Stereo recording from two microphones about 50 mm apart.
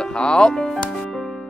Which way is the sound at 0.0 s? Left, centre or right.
Centre.